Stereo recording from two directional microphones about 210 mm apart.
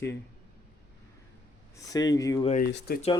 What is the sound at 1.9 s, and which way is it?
Speech, 15° left (ahead or behind).